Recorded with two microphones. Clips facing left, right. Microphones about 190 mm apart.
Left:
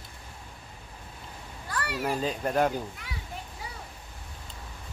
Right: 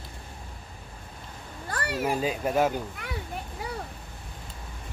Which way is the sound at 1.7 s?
45° right (ahead or behind).